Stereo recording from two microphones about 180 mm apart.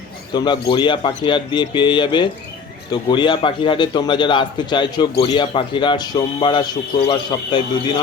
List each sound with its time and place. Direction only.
0.3 s speech: 25° left (ahead or behind)